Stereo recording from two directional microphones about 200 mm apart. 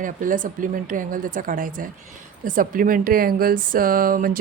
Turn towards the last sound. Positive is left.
turn(degrees=-45)  # may be behind; listen again after turning